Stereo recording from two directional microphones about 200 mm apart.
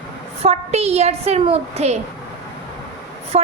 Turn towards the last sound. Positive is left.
turn(degrees=-30)  # may be behind; listen again after turning